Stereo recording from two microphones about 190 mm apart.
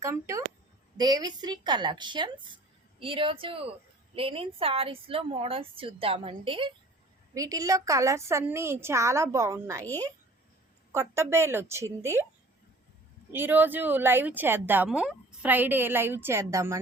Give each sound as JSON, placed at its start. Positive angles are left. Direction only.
{"t": 0.0, "sound": "a woman's voice", "side_deg": -15}
{"t": 10.9, "sound": "a woman's voice", "side_deg": -15}
{"t": 13.3, "sound": "a woman's voice", "side_deg": -10}